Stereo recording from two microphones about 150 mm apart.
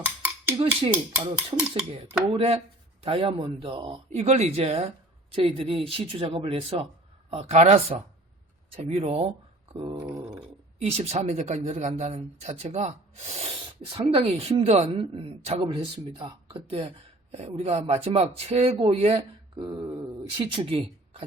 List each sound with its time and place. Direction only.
0.8 s speech: 35° right (ahead or behind)
9.7 s speech: 30° right (ahead or behind)
10.1 s a sound: 20° right (ahead or behind)
10.8 s speech: 45° right (ahead or behind)